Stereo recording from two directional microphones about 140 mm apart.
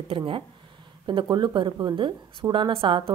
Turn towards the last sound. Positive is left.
turn(degrees=-35)  # may be behind; listen again after turning